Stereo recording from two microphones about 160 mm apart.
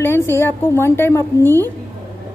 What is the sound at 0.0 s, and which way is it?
A woman's voice, 15° left (ahead or behind).